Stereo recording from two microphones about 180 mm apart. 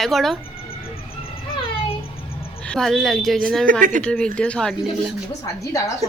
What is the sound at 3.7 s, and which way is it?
Speech, 50° right (ahead or behind).